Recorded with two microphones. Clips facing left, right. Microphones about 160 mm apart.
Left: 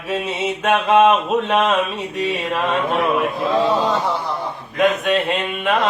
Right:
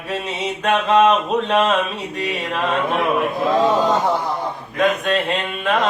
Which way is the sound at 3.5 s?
45° right (ahead or behind).